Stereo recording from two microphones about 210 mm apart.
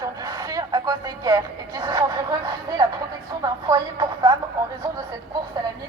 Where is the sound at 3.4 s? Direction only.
15° right (ahead or behind).